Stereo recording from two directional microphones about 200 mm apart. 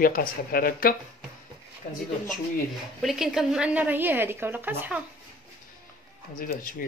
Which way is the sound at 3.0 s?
Centre (ahead or behind).